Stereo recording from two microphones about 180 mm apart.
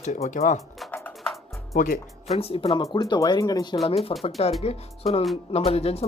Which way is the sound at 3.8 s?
35° left (ahead or behind).